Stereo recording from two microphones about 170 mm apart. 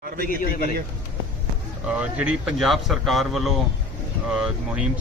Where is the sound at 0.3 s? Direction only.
55° left (ahead or behind).